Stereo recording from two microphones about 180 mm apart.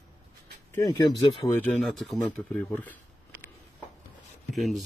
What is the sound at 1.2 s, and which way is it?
Speech, 15° left (ahead or behind).